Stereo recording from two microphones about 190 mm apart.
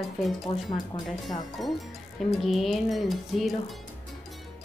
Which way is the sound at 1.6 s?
Centre (ahead or behind).